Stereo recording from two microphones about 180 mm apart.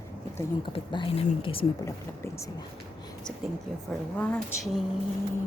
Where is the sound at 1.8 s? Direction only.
15° left (ahead or behind).